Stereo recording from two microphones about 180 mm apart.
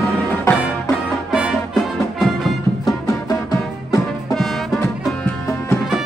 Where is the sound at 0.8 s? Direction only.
5° right (ahead or behind).